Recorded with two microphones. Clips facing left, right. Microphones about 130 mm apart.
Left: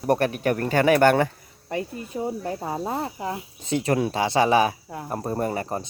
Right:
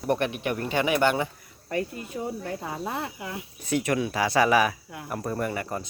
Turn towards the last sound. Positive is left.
turn(degrees=30)  # may be behind; listen again after turning